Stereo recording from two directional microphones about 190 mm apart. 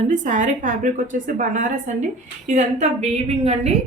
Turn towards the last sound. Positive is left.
turn(degrees=-35)  # may be behind; listen again after turning